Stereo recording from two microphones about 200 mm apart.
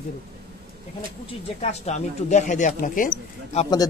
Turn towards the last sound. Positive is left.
turn(degrees=35)  # may be behind; listen again after turning